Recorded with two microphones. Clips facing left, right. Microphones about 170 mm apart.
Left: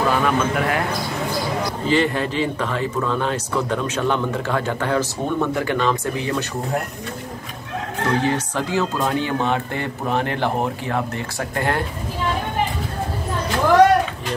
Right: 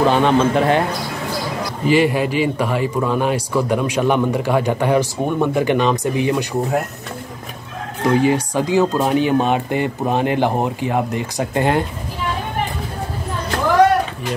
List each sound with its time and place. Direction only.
0.0 s a man's voice: 25° right (ahead or behind)
1.9 s a man's voice: 10° right (ahead or behind)
8.0 s a man's voice: 15° right (ahead or behind)